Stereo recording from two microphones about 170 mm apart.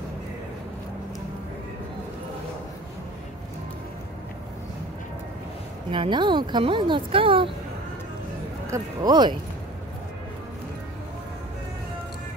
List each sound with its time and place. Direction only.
5.9 s speech: 30° right (ahead or behind)
8.6 s speech: 20° right (ahead or behind)